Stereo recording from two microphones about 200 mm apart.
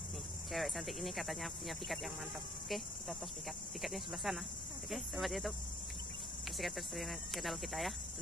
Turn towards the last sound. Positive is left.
turn(degrees=0)  # may be behind; listen again after turning